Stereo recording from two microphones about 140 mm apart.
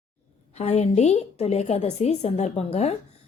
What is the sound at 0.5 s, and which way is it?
Speech, 50° left (ahead or behind).